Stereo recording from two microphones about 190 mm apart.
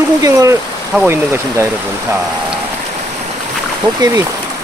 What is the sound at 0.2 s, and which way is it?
Speech, 20° right (ahead or behind).